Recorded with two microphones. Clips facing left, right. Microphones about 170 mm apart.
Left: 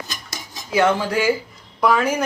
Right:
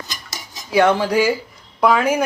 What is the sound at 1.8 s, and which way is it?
Speech, 10° right (ahead or behind).